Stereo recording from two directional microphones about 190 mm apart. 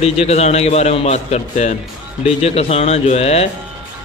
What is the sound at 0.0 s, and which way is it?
Speech, 35° left (ahead or behind).